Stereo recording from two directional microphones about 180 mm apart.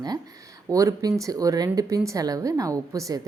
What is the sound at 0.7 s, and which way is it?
Speech, 20° right (ahead or behind).